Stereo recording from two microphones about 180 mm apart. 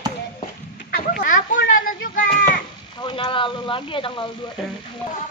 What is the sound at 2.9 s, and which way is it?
Speech, 25° left (ahead or behind).